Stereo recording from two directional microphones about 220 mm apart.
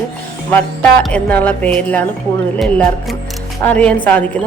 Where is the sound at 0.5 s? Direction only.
5° left (ahead or behind).